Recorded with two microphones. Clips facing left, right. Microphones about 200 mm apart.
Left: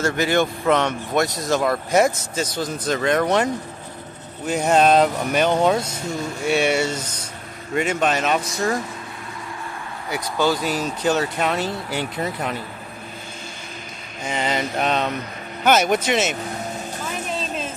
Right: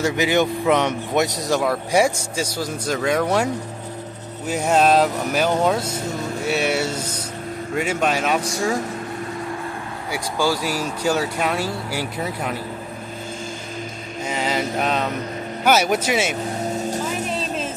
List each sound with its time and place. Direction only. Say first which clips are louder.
0.0 s speech: right 1 dB; 15° right (ahead or behind)
1.6 s speech: left 1 dB; 5° right (ahead or behind)
4.5 s speech: left 1 dB; 5° right (ahead or behind)
10.1 s speech: left 1 dB; 10° right (ahead or behind)
14.2 s a sound: even; 5° right (ahead or behind)
15.6 s speech: left 1 dB; 5° right (ahead or behind)